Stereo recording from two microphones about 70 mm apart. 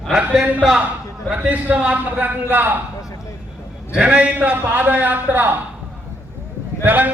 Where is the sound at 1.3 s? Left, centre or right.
Right.